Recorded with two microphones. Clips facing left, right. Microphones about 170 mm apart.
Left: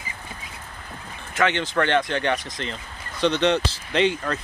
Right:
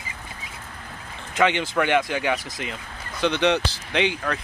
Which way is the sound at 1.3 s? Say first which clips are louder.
Right 1 dB; 15° right (ahead or behind).